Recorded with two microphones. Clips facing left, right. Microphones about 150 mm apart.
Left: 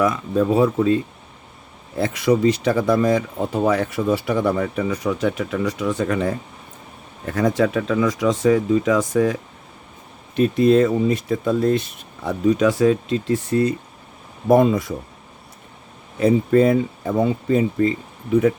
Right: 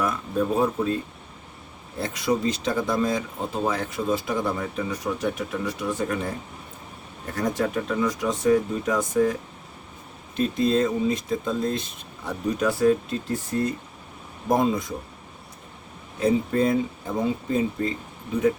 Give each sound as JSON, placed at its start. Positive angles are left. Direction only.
{"t": 0.0, "sound": "speech", "side_deg": 90}
{"t": 2.0, "sound": "speech", "side_deg": 70}
{"t": 7.3, "sound": "speech", "side_deg": 90}
{"t": 10.3, "sound": "speech", "side_deg": 65}
{"t": 12.2, "sound": "speech", "side_deg": 90}
{"t": 14.4, "sound": "speech", "side_deg": 65}
{"t": 16.2, "sound": "speech", "side_deg": 65}